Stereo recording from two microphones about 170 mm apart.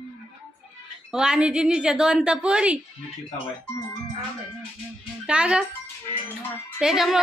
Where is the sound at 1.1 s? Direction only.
5° right (ahead or behind).